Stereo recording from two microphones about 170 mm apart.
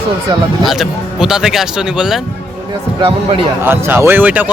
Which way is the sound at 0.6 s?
Centre (ahead or behind).